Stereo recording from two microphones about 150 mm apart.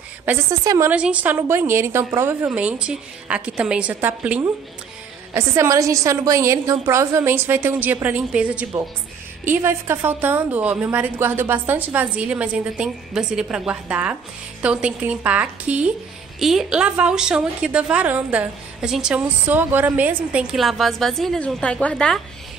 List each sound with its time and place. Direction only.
0.2 s a woman's voice: 15° right (ahead or behind)
0.8 s a woman's voice: 10° right (ahead or behind)